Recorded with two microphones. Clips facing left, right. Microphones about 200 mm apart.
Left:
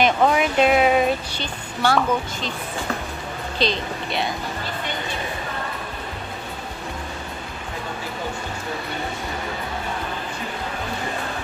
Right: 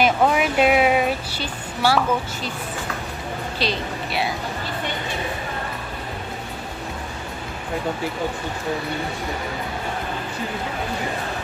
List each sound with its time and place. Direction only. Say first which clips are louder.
0.0 s a woman's voice: even; 5° right (ahead or behind)
3.5 s a woman's voice: left 3 dB; 5° right (ahead or behind)